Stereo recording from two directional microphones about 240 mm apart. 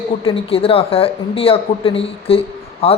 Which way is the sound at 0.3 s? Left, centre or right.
Left.